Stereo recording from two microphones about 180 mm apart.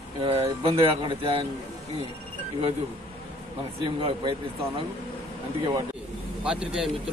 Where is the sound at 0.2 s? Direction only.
30° right (ahead or behind).